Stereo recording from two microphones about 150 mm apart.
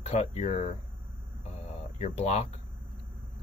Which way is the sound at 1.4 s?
45° left (ahead or behind).